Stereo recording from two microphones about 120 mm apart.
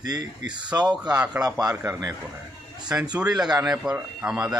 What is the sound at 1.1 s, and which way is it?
Speech, 10° right (ahead or behind).